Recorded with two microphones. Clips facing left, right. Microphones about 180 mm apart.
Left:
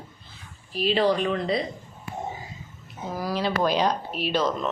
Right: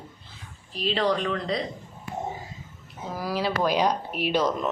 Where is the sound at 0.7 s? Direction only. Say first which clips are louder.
Left 3 dB; 5° left (ahead or behind).